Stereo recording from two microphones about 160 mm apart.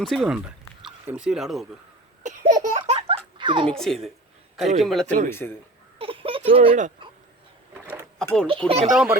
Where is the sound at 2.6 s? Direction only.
45° right (ahead or behind).